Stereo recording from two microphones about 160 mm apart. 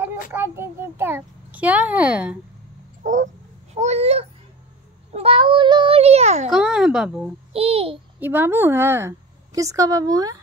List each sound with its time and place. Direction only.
0.0 s a child's voice: 15° right (ahead or behind)
3.0 s a sound: 50° right (ahead or behind)
3.7 s a child's voice: 45° right (ahead or behind)
6.5 s a child's voice: 5° right (ahead or behind)
7.5 s a child's voice: 40° right (ahead or behind)
8.2 s a woman's voice: 10° right (ahead or behind)